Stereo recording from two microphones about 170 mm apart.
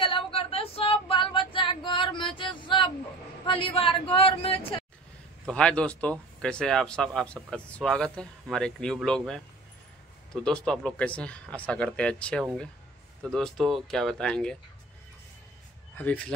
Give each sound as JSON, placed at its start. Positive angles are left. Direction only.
{"t": 0.0, "sound": "female singing", "side_deg": 30}
{"t": 3.4, "sound": "a sound", "side_deg": 30}
{"t": 5.5, "sound": "speech", "side_deg": 5}
{"t": 16.0, "sound": "speech", "side_deg": 5}